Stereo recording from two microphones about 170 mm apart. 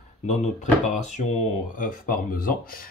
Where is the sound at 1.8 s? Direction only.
55° left (ahead or behind).